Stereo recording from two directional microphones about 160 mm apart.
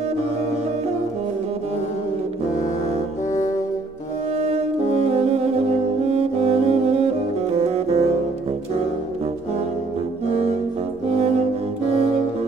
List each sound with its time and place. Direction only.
4.4 s brass instrument: 40° right (ahead or behind)
7.5 s music: 40° right (ahead or behind)